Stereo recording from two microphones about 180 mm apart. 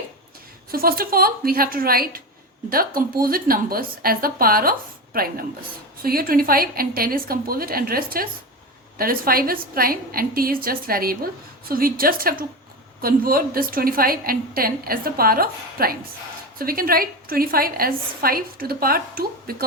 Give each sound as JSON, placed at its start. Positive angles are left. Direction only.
{"t": 0.7, "sound": "a woman's voice", "side_deg": -55}